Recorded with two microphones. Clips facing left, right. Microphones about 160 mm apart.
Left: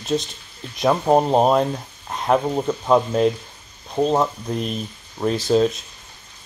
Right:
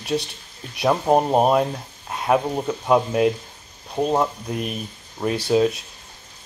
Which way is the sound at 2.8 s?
10° right (ahead or behind).